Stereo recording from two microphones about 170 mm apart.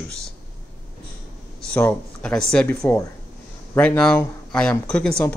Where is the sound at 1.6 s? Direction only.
5° left (ahead or behind).